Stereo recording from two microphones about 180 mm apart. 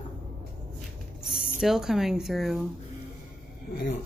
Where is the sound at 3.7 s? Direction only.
65° left (ahead or behind).